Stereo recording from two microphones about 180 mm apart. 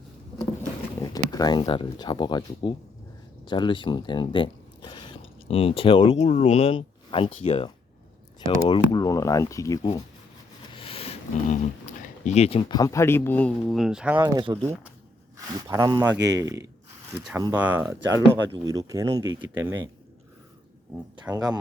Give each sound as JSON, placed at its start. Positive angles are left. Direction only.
{"t": 1.0, "sound": "speech", "side_deg": 20}
{"t": 7.3, "sound": "speech", "side_deg": 45}
{"t": 8.4, "sound": "speech", "side_deg": 25}
{"t": 10.8, "sound": "a sound", "side_deg": 30}
{"t": 12.7, "sound": "speech", "side_deg": 20}
{"t": 14.2, "sound": "speech", "side_deg": -25}
{"t": 19.2, "sound": "speech", "side_deg": -90}
{"t": 21.3, "sound": "speech", "side_deg": -20}